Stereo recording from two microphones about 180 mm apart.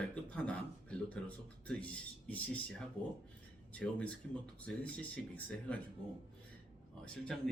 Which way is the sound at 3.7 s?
5° left (ahead or behind).